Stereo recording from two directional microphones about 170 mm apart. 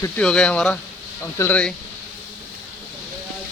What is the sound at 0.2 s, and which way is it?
Speech, 5° left (ahead or behind).